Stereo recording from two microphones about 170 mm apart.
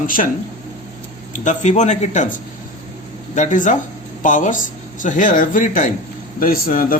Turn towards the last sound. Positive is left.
turn(degrees=55)  # may be behind; listen again after turning